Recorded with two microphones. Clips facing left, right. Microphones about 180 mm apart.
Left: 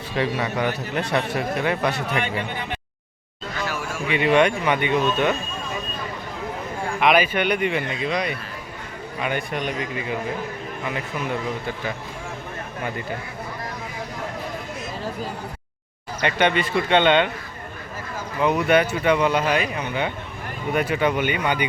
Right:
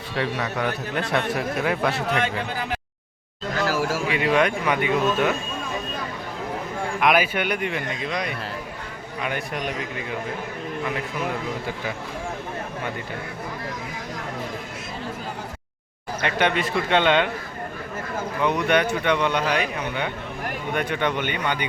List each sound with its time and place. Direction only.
0.2 s a man's voice: 5° left (ahead or behind)
3.6 s a sound: 90° right
4.1 s a man's voice: centre (ahead or behind)
7.0 s a man's voice: 5° right (ahead or behind)
16.2 s a man's voice: centre (ahead or behind)
18.3 s a man's voice: 5° left (ahead or behind)